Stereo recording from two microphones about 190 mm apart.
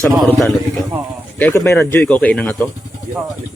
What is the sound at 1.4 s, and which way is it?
Speech, 15° left (ahead or behind).